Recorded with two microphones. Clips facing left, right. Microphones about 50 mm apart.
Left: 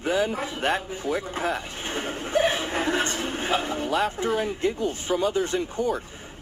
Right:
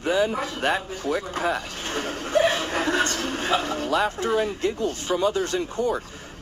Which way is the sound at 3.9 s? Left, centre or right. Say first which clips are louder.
Right 2 dB; centre.